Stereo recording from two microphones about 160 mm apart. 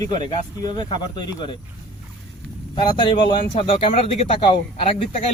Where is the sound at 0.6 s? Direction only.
30° left (ahead or behind).